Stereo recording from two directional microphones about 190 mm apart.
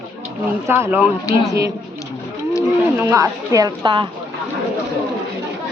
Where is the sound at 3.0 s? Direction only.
15° right (ahead or behind).